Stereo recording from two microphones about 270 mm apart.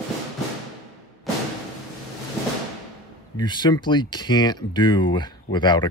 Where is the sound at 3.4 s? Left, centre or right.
Centre.